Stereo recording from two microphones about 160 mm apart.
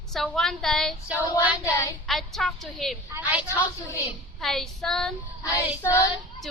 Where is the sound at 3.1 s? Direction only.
10° right (ahead or behind).